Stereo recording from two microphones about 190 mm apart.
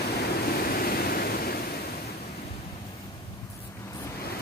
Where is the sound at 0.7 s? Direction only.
50° left (ahead or behind).